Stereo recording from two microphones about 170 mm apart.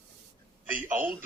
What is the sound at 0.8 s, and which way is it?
Speech, 15° right (ahead or behind).